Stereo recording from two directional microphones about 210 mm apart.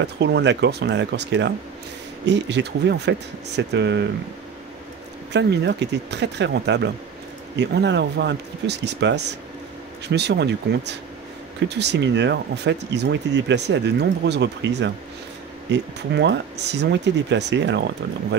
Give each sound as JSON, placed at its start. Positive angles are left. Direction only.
{"t": 0.0, "sound": "speech", "side_deg": -55}
{"t": 5.3, "sound": "speech", "side_deg": -55}